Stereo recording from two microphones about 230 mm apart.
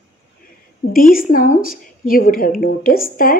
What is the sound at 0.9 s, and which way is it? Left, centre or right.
A woman's voice, left.